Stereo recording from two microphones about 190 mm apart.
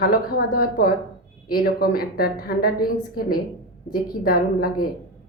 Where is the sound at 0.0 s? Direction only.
50° left (ahead or behind).